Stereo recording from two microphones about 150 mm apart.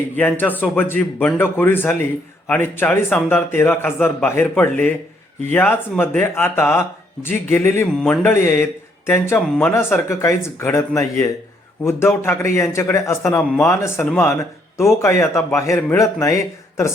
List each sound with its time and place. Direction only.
0.2 s a man's voice: 10° left (ahead or behind)
7.9 s mantra: 5° left (ahead or behind)
8.3 s a man's voice: 15° left (ahead or behind)